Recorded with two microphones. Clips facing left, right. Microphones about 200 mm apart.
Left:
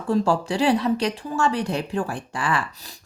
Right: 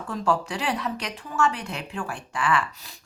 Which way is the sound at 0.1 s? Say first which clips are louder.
Left 5 dB; 30° left (ahead or behind).